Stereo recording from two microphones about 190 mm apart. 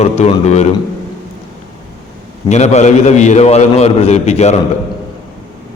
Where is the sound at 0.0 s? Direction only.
35° left (ahead or behind).